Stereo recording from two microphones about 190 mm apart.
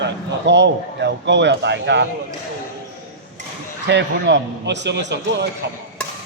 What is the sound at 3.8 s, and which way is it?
A man's voice, 65° right (ahead or behind).